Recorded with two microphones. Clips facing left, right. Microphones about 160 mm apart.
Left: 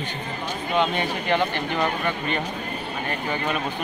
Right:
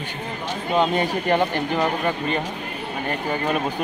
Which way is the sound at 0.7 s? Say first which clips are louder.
Right 3 dB; 40° right (ahead or behind).